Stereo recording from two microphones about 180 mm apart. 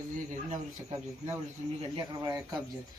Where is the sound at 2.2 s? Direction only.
20° right (ahead or behind).